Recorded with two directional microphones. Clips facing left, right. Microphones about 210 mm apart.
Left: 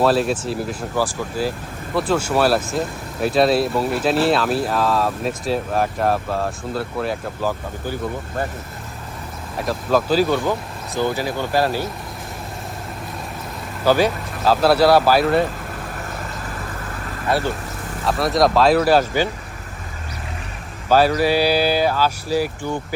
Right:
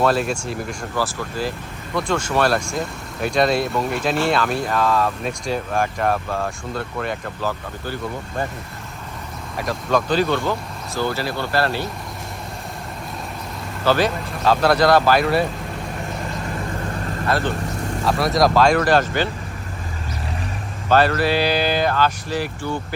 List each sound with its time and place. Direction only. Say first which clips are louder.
0.0 s speech: left 2 dB; centre (ahead or behind)
9.6 s speech: left 2 dB; 5° left (ahead or behind)
13.8 s speech: left 2 dB; 10° left (ahead or behind)
17.2 s speech: left 1 dB; 10° left (ahead or behind)
18.0 s speech: left 1 dB; centre (ahead or behind)
20.9 s speech: left 2 dB; 10° left (ahead or behind)